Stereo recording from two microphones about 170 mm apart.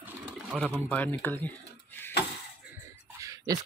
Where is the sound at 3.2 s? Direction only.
20° right (ahead or behind).